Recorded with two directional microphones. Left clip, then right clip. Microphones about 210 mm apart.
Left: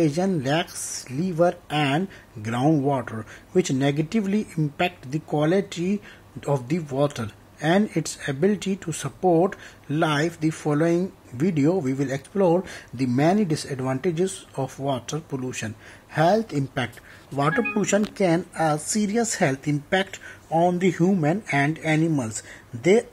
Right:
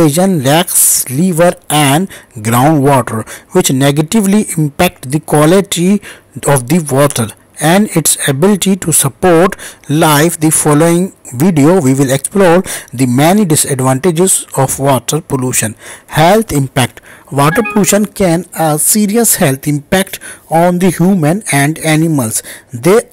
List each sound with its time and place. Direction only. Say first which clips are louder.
0.0 s speech: right 13 dB; 30° right (ahead or behind)